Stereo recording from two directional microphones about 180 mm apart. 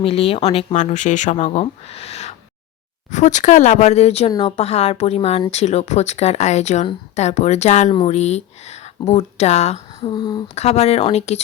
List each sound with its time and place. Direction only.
0.0 s speech: 30° left (ahead or behind)
10.1 s speech: 25° left (ahead or behind)
10.5 s speech: 35° left (ahead or behind)